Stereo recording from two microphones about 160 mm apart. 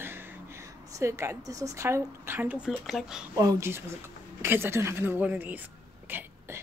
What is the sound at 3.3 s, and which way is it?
Speech, 20° right (ahead or behind).